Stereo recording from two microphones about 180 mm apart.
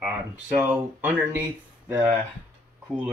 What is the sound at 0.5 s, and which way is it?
Speech, 10° right (ahead or behind).